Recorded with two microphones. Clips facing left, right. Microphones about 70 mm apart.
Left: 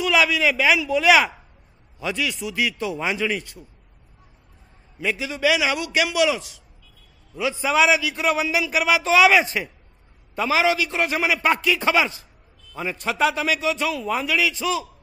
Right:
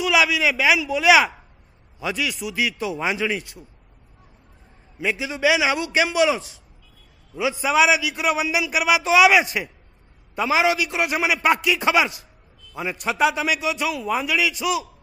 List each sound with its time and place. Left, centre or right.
0.0 s a man's voice: centre
4.9 s a man's voice: centre